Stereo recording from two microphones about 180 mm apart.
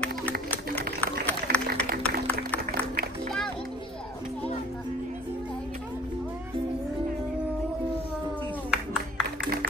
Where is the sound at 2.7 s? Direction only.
60° right (ahead or behind).